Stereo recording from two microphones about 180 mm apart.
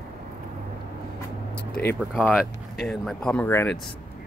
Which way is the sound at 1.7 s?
5° left (ahead or behind).